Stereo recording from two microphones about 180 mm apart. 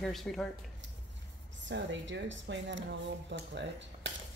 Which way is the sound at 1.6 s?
90° right.